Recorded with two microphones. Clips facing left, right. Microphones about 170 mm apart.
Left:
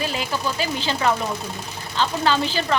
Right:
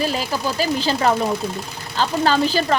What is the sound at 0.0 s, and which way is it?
A woman's voice, 40° right (ahead or behind).